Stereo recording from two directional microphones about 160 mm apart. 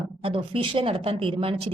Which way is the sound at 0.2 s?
35° right (ahead or behind).